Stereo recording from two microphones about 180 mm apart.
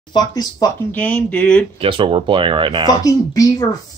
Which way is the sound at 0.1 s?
20° left (ahead or behind).